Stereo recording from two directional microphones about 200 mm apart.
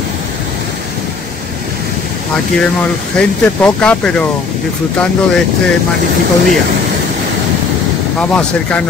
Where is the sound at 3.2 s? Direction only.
5° left (ahead or behind).